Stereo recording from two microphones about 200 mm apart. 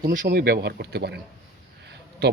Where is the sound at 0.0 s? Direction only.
45° right (ahead or behind).